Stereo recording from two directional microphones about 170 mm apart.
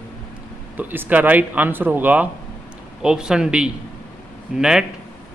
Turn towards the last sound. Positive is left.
turn(degrees=-5)  # may be behind; listen again after turning